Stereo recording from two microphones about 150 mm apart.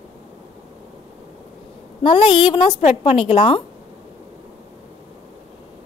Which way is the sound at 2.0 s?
35° left (ahead or behind).